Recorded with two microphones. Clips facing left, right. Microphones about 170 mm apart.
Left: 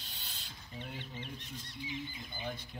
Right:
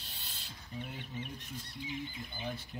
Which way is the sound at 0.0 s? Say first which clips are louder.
Even; centre (ahead or behind).